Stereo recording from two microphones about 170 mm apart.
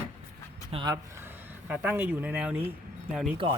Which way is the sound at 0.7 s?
25° right (ahead or behind).